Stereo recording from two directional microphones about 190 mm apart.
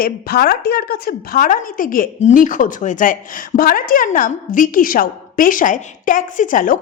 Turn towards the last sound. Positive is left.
turn(degrees=45)  # may be behind; listen again after turning